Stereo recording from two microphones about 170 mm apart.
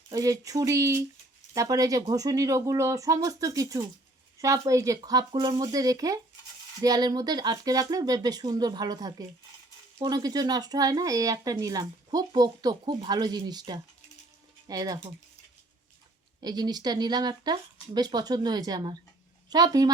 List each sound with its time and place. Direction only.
0.1 s speech: 20° right (ahead or behind)
16.4 s speech: 25° right (ahead or behind)